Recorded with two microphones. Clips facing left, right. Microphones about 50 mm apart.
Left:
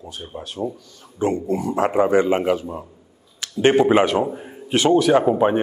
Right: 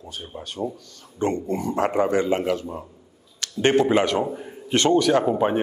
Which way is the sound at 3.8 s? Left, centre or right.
Centre.